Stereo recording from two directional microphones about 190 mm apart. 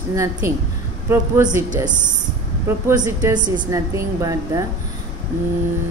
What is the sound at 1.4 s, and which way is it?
Speech, 40° right (ahead or behind).